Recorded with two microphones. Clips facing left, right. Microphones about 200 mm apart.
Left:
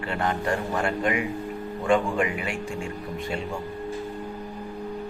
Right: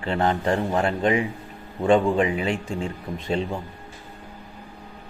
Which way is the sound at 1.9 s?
25° right (ahead or behind).